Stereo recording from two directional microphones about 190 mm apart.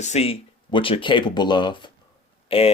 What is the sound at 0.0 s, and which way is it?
Speech, 35° left (ahead or behind).